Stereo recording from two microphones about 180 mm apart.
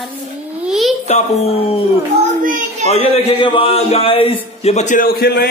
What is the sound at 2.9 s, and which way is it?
A man's voice, 35° left (ahead or behind).